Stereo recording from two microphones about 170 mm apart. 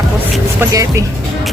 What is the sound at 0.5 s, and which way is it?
Speech, 20° right (ahead or behind).